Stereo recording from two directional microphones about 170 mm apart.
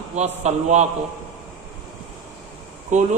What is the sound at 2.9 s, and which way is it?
Speech, 45° right (ahead or behind).